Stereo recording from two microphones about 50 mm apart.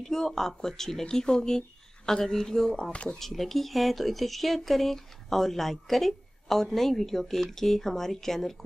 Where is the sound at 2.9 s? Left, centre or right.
Left.